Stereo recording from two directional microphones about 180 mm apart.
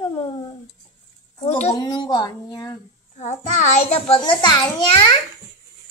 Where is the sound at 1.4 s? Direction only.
35° left (ahead or behind).